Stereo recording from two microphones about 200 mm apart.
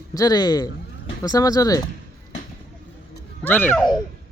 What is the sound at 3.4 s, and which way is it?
Speech, 10° left (ahead or behind).